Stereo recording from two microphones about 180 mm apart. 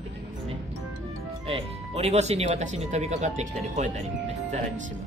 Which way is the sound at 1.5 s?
35° right (ahead or behind).